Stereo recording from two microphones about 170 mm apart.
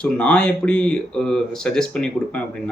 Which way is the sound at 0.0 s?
5° left (ahead or behind).